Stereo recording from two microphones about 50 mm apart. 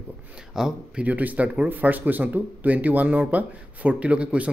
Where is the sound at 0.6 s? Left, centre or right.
Centre.